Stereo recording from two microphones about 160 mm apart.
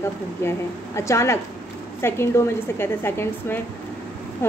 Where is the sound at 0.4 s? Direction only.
15° left (ahead or behind).